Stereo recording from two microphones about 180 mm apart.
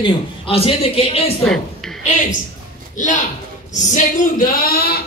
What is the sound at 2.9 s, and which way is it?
Speech, 45° left (ahead or behind).